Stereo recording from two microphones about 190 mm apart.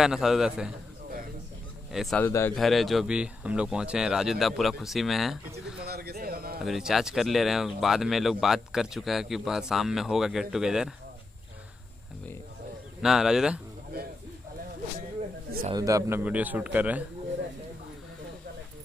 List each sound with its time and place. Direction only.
0.0 s speech: centre (ahead or behind)
1.9 s speech: centre (ahead or behind)
2.2 s speech: 15° left (ahead or behind)
2.5 s speech: centre (ahead or behind)
5.9 s a sound: 55° right (ahead or behind)
6.6 s speech: centre (ahead or behind)
13.0 s speech: 5° right (ahead or behind)
15.7 s a man's voice: 15° right (ahead or behind)